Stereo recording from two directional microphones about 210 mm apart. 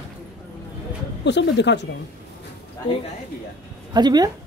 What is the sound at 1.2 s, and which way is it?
Speech, 55° left (ahead or behind).